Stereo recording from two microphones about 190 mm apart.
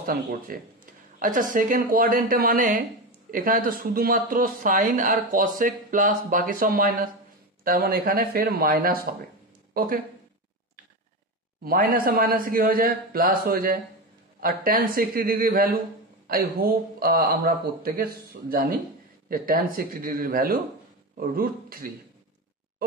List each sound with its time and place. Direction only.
0.0 s speech: 50° right (ahead or behind)
11.6 s speech: 50° right (ahead or behind)